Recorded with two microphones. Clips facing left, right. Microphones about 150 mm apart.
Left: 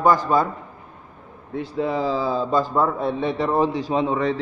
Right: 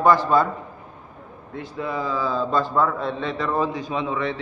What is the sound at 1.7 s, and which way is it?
Speech, 30° left (ahead or behind).